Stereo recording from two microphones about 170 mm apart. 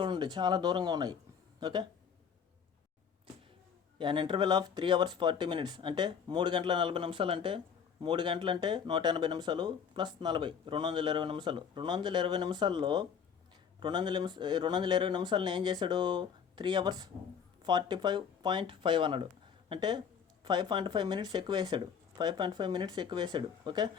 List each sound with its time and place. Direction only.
0.0 s speech: 25° right (ahead or behind)
3.9 s speech: 30° right (ahead or behind)